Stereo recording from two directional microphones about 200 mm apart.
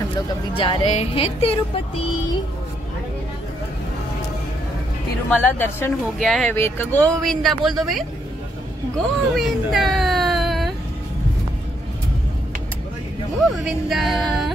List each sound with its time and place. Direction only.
0.6 s music: 25° left (ahead or behind)
5.3 s speech: 10° left (ahead or behind)
8.9 s whimper: centre (ahead or behind)
13.7 s speech: centre (ahead or behind)